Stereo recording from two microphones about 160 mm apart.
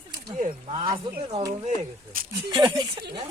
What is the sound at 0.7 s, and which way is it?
Speech, 30° right (ahead or behind).